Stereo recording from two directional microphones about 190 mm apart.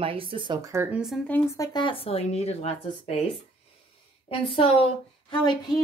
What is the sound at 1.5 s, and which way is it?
Speech, 20° left (ahead or behind).